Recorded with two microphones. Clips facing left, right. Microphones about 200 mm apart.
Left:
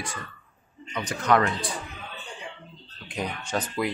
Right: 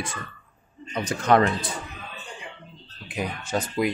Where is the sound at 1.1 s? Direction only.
30° right (ahead or behind).